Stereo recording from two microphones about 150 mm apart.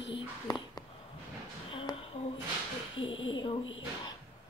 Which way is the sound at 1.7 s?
35° left (ahead or behind).